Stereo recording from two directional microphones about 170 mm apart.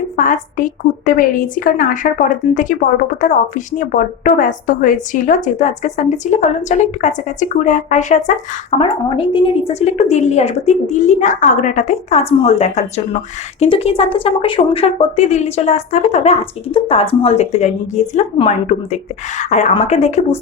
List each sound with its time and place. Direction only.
0.2 s a woman's voice: 50° left (ahead or behind)
8.8 s a woman's voice: 30° left (ahead or behind)